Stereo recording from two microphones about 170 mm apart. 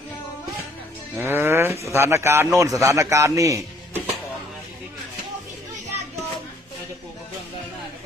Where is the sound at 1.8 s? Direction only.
15° right (ahead or behind).